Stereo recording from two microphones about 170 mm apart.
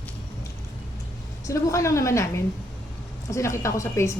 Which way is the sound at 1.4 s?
15° left (ahead or behind).